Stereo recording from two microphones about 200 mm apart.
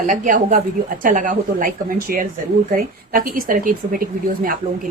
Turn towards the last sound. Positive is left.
turn(degrees=-45)  # may be behind; listen again after turning